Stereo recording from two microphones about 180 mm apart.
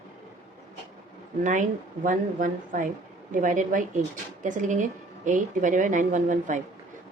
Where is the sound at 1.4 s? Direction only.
45° right (ahead or behind).